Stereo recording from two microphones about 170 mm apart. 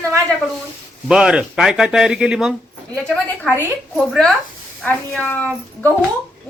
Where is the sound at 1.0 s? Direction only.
5° right (ahead or behind).